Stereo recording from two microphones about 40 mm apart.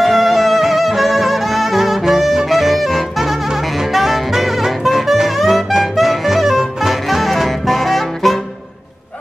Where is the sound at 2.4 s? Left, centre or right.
Centre.